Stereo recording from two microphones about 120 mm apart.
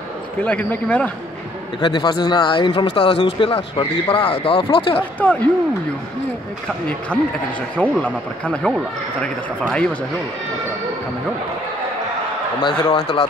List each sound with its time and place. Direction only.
0.4 s speech: 15° left (ahead or behind)
1.8 s speech: 40° left (ahead or behind)
5.2 s speech: 10° left (ahead or behind)
7.1 s speech: 10° left (ahead or behind)
12.6 s speech: 45° left (ahead or behind)